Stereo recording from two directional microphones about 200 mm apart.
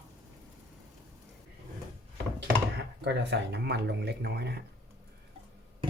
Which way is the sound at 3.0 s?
55° right (ahead or behind).